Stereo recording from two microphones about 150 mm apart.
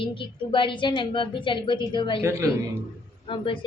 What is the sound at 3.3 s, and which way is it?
Speech, 30° left (ahead or behind).